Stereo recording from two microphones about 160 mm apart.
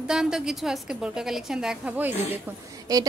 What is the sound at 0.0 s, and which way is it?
A woman's voice, 5° right (ahead or behind).